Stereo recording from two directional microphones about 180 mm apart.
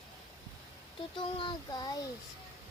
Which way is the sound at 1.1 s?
25° left (ahead or behind).